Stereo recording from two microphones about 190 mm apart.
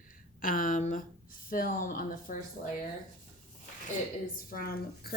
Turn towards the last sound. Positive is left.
turn(degrees=50)  # may be behind; listen again after turning